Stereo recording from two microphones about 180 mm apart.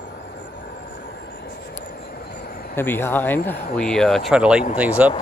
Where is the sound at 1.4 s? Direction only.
60° left (ahead or behind).